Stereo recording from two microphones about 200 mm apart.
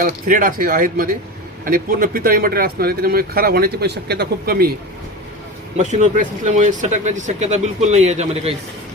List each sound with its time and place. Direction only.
0.0 s speech: 45° right (ahead or behind)
5.7 s speech: 35° right (ahead or behind)